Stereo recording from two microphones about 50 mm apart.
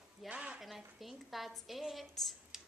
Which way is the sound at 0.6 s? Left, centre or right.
Centre.